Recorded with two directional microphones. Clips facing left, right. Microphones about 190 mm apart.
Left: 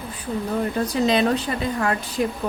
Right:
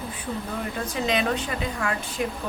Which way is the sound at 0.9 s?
35° left (ahead or behind).